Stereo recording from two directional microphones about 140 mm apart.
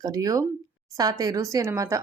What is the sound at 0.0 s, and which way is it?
Speech, 25° right (ahead or behind).